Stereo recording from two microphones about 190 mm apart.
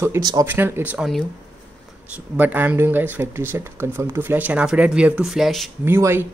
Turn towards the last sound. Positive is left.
turn(degrees=-10)  # may be behind; listen again after turning